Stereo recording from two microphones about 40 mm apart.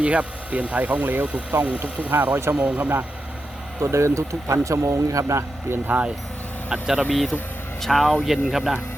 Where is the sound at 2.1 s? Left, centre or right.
Right.